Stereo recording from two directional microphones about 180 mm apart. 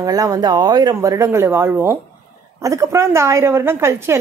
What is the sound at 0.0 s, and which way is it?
A woman's voice, 20° right (ahead or behind).